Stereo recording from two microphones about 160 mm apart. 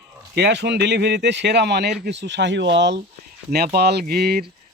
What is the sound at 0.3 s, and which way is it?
Speech, 90° right.